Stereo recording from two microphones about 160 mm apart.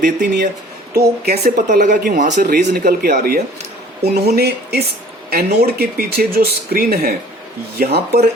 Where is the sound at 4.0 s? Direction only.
85° right.